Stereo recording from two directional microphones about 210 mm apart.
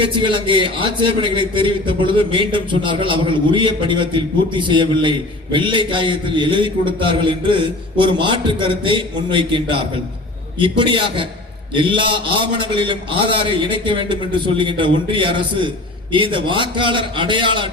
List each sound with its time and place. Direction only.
0.0 s a man's voice: 25° right (ahead or behind)